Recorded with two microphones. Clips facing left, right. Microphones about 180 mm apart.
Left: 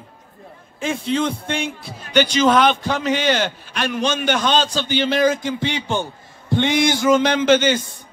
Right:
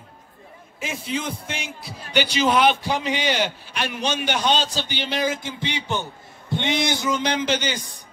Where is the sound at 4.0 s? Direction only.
50° left (ahead or behind).